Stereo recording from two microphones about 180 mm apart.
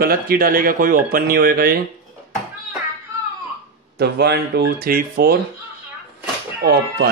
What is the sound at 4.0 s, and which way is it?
Speech, 65° right (ahead or behind).